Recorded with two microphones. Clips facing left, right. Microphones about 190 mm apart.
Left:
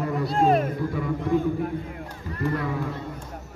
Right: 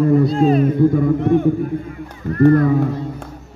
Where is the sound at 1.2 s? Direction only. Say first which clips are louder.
Right 8 dB; 65° right (ahead or behind).